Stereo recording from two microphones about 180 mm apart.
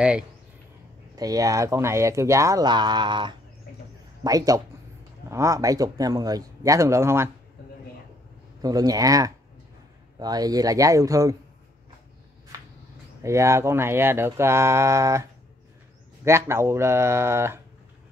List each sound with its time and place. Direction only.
1.1 s speech: 20° right (ahead or behind)
8.6 s speech: 20° right (ahead or behind)
13.2 s speech: 15° right (ahead or behind)
16.3 s speech: 15° right (ahead or behind)